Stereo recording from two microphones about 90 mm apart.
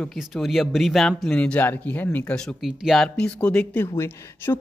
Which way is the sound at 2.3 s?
5° left (ahead or behind).